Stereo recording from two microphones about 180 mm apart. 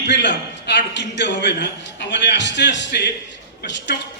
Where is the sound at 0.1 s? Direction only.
75° left (ahead or behind).